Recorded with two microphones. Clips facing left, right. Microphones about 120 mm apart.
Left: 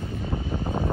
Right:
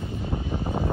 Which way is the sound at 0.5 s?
10° right (ahead or behind).